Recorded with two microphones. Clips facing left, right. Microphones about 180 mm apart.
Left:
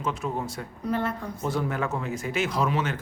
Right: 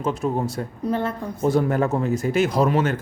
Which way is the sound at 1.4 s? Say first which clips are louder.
Right 9 dB; 45° right (ahead or behind).